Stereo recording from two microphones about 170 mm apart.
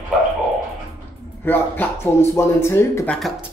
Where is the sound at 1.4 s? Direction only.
10° left (ahead or behind).